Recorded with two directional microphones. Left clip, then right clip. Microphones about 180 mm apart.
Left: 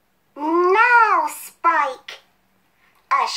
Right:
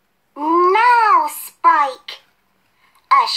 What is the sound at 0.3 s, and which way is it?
Babbling, 25° right (ahead or behind).